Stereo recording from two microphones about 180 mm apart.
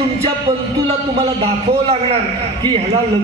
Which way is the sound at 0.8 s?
35° right (ahead or behind).